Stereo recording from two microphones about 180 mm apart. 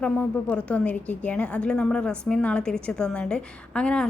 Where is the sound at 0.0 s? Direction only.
5° left (ahead or behind).